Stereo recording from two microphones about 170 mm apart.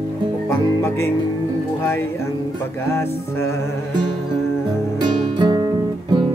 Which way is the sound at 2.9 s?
15° left (ahead or behind).